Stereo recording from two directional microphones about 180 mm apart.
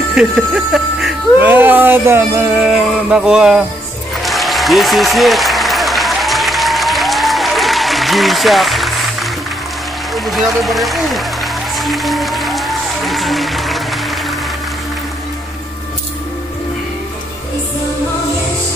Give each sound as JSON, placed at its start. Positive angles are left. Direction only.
{"t": 0.2, "sound": "speech", "side_deg": -5}
{"t": 4.2, "sound": "applause", "side_deg": 0}
{"t": 10.1, "sound": "music", "side_deg": 0}